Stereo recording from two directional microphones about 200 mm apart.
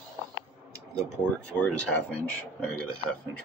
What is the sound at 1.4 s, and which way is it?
Speech, 5° left (ahead or behind).